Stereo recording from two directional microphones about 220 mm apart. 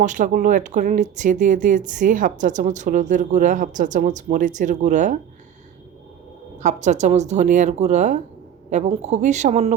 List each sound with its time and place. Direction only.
0.0 s speech: 35° right (ahead or behind)
6.6 s speech: 35° right (ahead or behind)